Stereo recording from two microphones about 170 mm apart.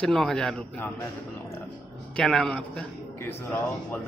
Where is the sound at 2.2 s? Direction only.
5° left (ahead or behind).